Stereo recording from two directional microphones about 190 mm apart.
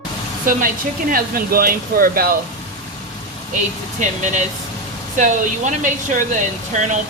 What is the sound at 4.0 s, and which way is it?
Speech, 40° right (ahead or behind).